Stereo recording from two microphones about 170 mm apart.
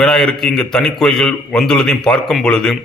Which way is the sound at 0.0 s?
5° left (ahead or behind).